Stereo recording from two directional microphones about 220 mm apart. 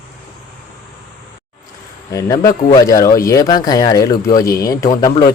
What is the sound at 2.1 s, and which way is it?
Speech, 15° left (ahead or behind).